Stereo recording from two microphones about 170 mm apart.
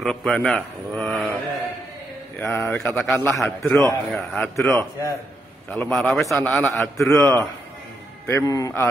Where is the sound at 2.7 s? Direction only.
Centre (ahead or behind).